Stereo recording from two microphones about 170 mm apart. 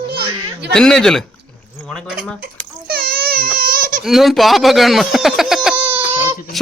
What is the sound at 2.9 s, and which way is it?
Baby cry, 60° right (ahead or behind).